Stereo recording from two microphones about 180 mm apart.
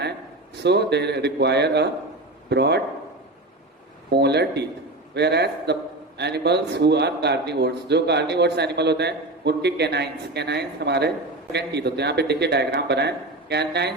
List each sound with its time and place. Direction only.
0.5 s a man's voice: 70° right (ahead or behind)
4.1 s a man's voice: 65° right (ahead or behind)